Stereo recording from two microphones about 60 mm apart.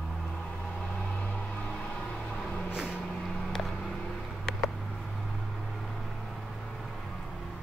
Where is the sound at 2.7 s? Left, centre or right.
Centre.